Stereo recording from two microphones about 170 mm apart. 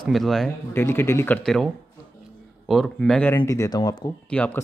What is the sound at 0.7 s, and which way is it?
Speech, 15° left (ahead or behind).